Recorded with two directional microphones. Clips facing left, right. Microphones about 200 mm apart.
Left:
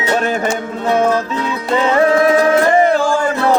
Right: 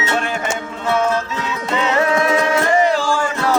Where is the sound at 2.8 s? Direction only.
55° left (ahead or behind).